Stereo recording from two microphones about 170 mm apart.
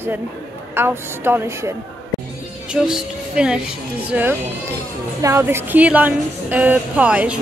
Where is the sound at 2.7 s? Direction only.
5° right (ahead or behind).